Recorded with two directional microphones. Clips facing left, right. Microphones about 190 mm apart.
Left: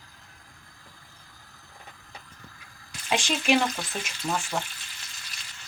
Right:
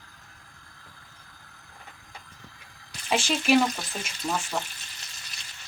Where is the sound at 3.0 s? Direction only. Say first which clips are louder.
Right 1 dB; centre (ahead or behind).